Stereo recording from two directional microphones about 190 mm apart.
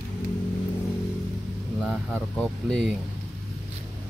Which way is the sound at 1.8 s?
5° left (ahead or behind).